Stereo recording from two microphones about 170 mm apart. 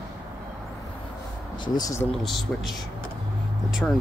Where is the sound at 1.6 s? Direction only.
20° left (ahead or behind).